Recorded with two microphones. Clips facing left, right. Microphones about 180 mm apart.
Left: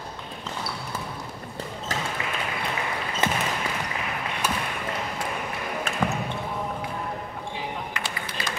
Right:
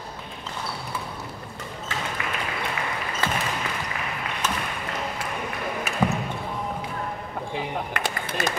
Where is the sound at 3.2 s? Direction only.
20° left (ahead or behind).